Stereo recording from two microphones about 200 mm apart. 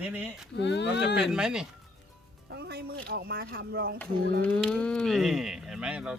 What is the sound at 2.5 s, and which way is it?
Speech, 55° right (ahead or behind).